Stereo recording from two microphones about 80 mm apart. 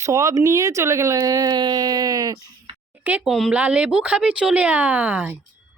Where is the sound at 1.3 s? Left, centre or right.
Right.